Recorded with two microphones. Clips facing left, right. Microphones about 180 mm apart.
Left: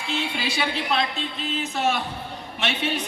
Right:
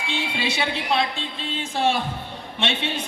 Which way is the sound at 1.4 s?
30° right (ahead or behind).